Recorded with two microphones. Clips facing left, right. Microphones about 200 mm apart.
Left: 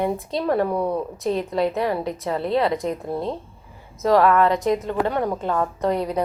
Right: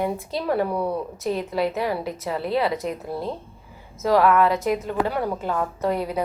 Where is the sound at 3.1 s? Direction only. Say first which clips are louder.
Left 3 dB; 25° left (ahead or behind).